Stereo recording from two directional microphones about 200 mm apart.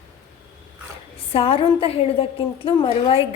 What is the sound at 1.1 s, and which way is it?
A woman's voice, 30° left (ahead or behind).